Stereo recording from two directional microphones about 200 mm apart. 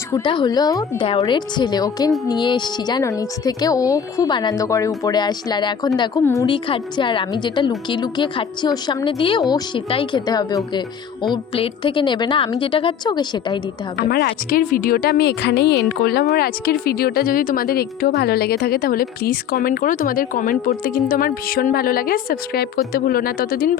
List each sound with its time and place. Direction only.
0.1 s speech: 25° left (ahead or behind)
13.9 s a woman's voice: 55° left (ahead or behind)